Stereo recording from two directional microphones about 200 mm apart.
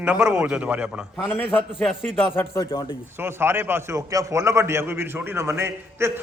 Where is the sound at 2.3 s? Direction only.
15° left (ahead or behind).